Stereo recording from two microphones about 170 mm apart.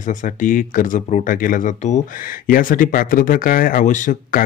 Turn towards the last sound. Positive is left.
turn(degrees=50)  # may be behind; listen again after turning